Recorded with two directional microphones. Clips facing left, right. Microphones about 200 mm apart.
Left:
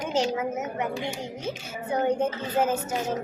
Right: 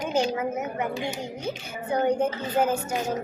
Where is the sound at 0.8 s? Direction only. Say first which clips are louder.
Right 1 dB; 20° right (ahead or behind).